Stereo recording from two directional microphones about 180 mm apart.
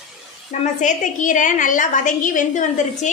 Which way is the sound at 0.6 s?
45° left (ahead or behind).